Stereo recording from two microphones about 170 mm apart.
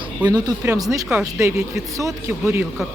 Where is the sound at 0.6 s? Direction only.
20° right (ahead or behind).